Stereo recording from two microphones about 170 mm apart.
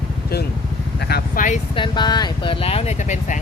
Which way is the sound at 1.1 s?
50° left (ahead or behind).